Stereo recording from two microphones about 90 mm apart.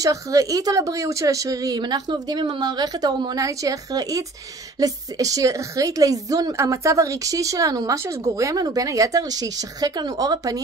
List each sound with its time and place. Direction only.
0.0 s a woman's voice: 35° right (ahead or behind)